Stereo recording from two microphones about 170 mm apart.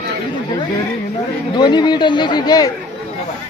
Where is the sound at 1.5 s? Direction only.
25° left (ahead or behind).